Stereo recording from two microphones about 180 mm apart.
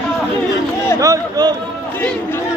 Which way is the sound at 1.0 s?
20° right (ahead or behind).